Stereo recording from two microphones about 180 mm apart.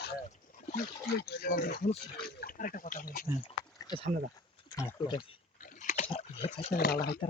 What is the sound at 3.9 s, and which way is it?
Speech, 20° left (ahead or behind).